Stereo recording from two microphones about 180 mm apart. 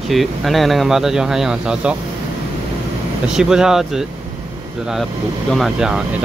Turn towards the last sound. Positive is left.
turn(degrees=-5)  # may be behind; listen again after turning